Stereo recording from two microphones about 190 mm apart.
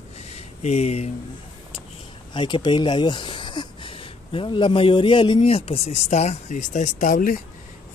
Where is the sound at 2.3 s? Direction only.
25° left (ahead or behind).